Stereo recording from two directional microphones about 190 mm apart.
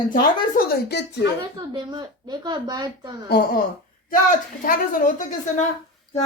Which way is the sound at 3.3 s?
55° left (ahead or behind).